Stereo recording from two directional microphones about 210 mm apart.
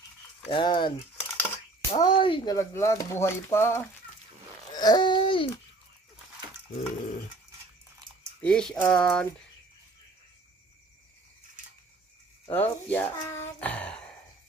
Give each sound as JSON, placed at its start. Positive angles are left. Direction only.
{"t": 0.5, "sound": "speech", "side_deg": 20}
{"t": 4.7, "sound": "babbling", "side_deg": 20}
{"t": 6.7, "sound": "a sound", "side_deg": 35}
{"t": 8.4, "sound": "speech", "side_deg": 5}
{"t": 12.5, "sound": "speech", "side_deg": 10}